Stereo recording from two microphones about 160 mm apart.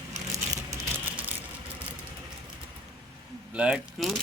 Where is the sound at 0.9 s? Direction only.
10° right (ahead or behind).